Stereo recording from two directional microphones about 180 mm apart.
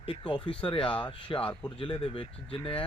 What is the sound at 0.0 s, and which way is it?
Speech, 30° left (ahead or behind).